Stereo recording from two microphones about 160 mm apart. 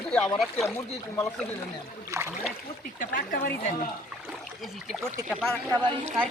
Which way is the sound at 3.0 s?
55° left (ahead or behind).